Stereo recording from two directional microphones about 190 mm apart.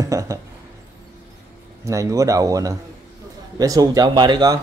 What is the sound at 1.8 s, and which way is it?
Speech, 15° right (ahead or behind).